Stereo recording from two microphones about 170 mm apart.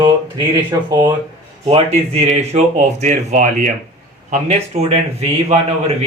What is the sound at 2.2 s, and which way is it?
A man's voice, 45° right (ahead or behind).